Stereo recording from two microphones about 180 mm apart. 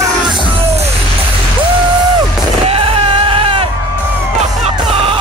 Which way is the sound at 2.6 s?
30° right (ahead or behind).